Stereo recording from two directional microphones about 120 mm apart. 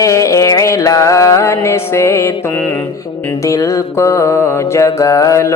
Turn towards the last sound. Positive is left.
turn(degrees=25)  # may be behind; listen again after turning